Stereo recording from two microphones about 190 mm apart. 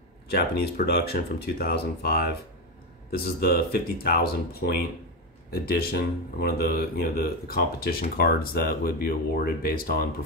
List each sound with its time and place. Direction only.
0.3 s speech: 55° left (ahead or behind)